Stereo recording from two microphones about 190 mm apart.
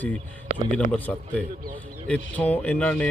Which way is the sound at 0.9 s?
10° left (ahead or behind).